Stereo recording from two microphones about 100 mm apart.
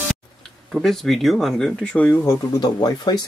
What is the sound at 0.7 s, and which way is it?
Speech, centre (ahead or behind).